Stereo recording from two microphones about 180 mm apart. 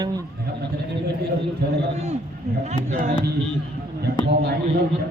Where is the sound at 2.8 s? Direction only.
40° right (ahead or behind).